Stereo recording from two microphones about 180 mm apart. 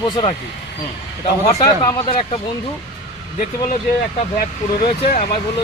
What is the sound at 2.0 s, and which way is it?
Speech, 35° left (ahead or behind).